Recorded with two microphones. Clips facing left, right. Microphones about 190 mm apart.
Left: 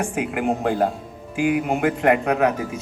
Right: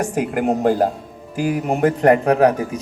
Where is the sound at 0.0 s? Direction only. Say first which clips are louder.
Right 4 dB; 40° right (ahead or behind).